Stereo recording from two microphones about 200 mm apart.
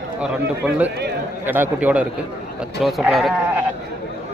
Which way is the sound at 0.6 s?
10° right (ahead or behind).